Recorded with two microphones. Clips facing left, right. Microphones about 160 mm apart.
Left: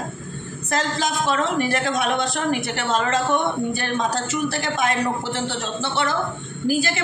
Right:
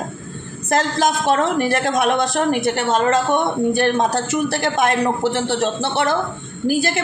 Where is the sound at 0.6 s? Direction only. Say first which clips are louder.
Right 6 dB; 50° right (ahead or behind).